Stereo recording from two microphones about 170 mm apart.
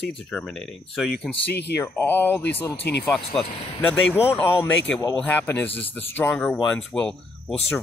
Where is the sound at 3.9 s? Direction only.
5° left (ahead or behind).